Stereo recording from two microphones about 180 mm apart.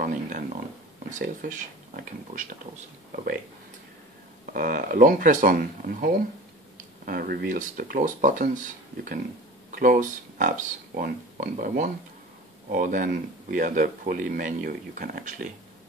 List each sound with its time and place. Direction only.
0.0 s a sound: 45° right (ahead or behind)
1.1 s speech: 50° right (ahead or behind)
4.6 s speech: 50° right (ahead or behind)
9.7 s speech: 50° right (ahead or behind)